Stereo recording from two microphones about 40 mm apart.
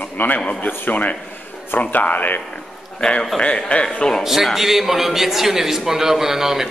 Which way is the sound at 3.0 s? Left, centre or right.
Left.